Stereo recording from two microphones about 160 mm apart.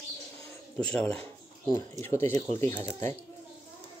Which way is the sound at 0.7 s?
5° left (ahead or behind).